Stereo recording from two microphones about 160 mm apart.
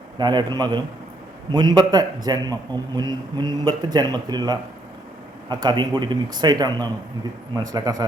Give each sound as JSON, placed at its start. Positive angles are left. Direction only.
{"t": 0.2, "sound": "a man's voice", "side_deg": -25}